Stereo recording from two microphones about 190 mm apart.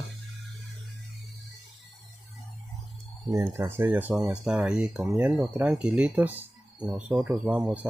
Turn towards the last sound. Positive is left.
turn(degrees=-5)  # may be behind; listen again after turning